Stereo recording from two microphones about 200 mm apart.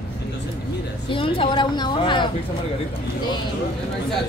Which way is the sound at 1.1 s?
25° left (ahead or behind).